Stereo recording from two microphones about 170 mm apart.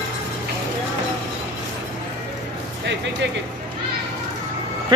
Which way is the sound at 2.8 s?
90° right.